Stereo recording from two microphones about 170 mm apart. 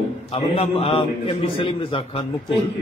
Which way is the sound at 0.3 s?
35° left (ahead or behind).